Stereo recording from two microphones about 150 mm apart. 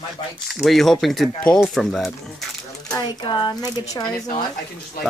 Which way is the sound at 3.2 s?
30° left (ahead or behind).